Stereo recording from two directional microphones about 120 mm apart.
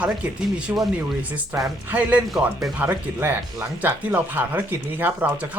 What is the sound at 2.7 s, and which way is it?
Speech, 20° right (ahead or behind).